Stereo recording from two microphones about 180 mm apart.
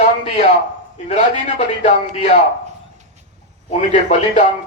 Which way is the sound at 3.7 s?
40° left (ahead or behind).